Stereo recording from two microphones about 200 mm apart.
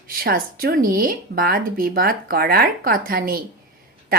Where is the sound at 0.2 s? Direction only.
45° right (ahead or behind).